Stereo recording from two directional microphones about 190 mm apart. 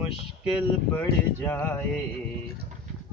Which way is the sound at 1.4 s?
10° left (ahead or behind).